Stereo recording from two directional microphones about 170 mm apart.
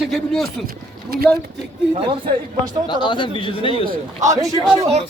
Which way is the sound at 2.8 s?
30° left (ahead or behind).